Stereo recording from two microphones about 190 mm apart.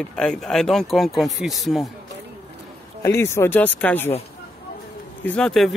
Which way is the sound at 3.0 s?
15° left (ahead or behind).